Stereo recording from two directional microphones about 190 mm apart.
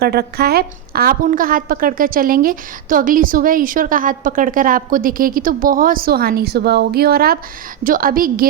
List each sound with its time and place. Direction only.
0.0 s a woman's voice: 55° right (ahead or behind)